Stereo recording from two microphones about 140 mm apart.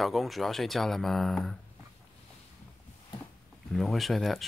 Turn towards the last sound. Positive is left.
turn(degrees=0)  # may be behind; listen again after turning